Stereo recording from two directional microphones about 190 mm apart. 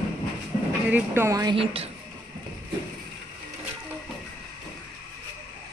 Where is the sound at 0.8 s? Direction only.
10° right (ahead or behind); by 1.9 s 30° right (ahead or behind).